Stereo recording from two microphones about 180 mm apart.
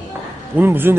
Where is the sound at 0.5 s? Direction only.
10° right (ahead or behind).